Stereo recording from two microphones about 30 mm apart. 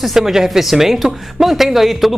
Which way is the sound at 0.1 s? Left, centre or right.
Centre.